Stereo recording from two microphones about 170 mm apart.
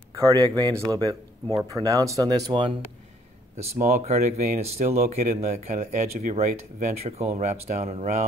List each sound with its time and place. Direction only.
0.1 s speech: 20° right (ahead or behind)
3.8 s speech: 45° right (ahead or behind)